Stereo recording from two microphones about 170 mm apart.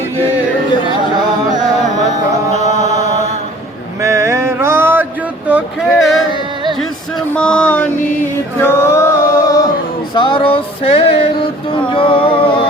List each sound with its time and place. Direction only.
2.6 s chant: 45° left (ahead or behind)
4.0 s mantra: 15° right (ahead or behind)
5.5 s a sound: 5° right (ahead or behind)
7.3 s mantra: 5° left (ahead or behind)
8.6 s music: 15° left (ahead or behind)
10.2 s music: 30° left (ahead or behind)